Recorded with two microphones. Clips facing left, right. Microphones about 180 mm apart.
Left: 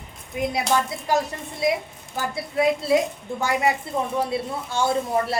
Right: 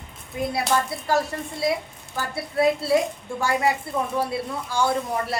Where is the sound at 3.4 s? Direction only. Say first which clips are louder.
Even; 20° left (ahead or behind).